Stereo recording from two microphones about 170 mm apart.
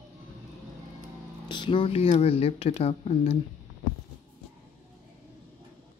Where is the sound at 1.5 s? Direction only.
30° left (ahead or behind).